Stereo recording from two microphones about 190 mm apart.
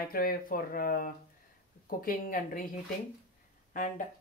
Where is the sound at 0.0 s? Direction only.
50° left (ahead or behind).